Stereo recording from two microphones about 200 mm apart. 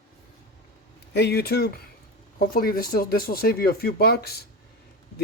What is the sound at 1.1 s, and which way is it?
Speech, 55° left (ahead or behind).